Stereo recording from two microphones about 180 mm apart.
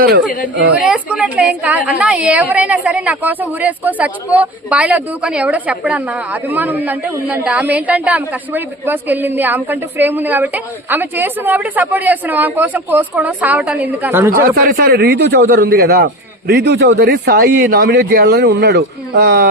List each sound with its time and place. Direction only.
0.8 s a woman's voice: 5° right (ahead or behind)
14.4 s a man's voice: 60° right (ahead or behind)